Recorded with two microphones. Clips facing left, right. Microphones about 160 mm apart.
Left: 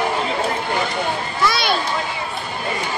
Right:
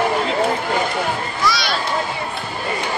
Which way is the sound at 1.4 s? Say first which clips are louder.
Left 1 dB; 55° left (ahead or behind).